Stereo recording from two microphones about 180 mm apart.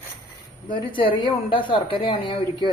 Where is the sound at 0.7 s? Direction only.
30° left (ahead or behind).